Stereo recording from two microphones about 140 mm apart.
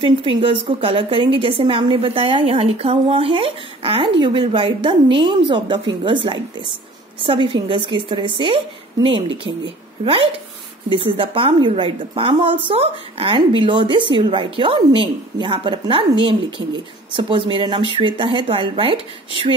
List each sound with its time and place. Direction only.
0.0 s speech: 40° right (ahead or behind)
10.0 s speech: 40° right (ahead or behind)